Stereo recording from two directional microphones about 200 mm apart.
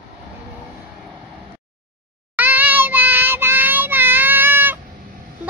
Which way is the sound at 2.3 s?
10° right (ahead or behind).